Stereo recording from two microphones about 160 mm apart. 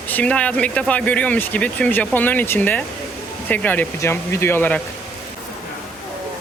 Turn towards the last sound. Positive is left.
turn(degrees=10)  # may be behind; listen again after turning